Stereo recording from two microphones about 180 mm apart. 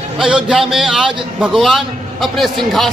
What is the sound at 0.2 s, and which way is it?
A man's voice, 5° right (ahead or behind).